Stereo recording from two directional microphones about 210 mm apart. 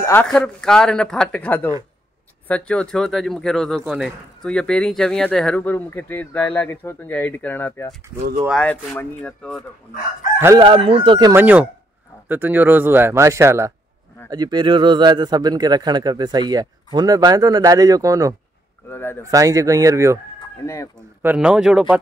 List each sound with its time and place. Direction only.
0.0 s speech: 10° left (ahead or behind)
10.6 s a man's voice: 25° right (ahead or behind)
11.3 s a man's voice: 5° right (ahead or behind)
18.9 s speech: 10° left (ahead or behind)
19.3 s a man's voice: 15° right (ahead or behind)
20.6 s speech: 15° left (ahead or behind)
21.2 s speech: 5° right (ahead or behind)